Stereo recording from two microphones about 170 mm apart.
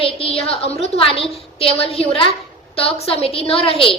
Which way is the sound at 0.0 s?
35° left (ahead or behind).